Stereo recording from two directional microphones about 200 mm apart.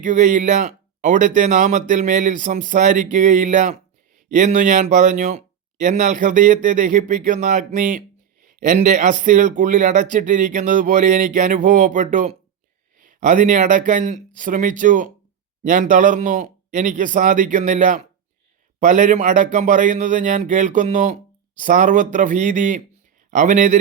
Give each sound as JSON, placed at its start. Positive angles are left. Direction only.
{"t": 0.0, "sound": "speech", "side_deg": -40}